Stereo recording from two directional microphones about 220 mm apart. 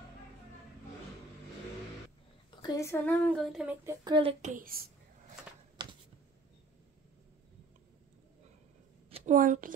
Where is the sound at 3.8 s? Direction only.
15° right (ahead or behind).